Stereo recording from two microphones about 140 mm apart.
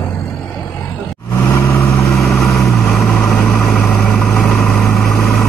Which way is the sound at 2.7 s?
Centre (ahead or behind).